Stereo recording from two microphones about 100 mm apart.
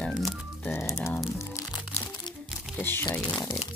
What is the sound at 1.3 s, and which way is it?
Music, 30° left (ahead or behind).